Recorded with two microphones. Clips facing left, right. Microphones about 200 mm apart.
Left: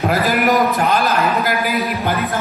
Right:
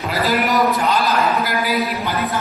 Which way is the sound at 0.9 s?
50° left (ahead or behind).